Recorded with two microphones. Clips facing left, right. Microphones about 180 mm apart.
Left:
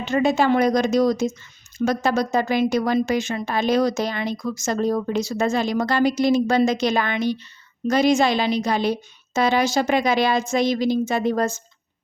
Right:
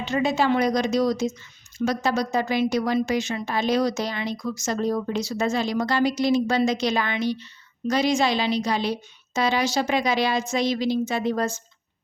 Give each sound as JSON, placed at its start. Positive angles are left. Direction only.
{"t": 0.0, "sound": "speech", "side_deg": 50}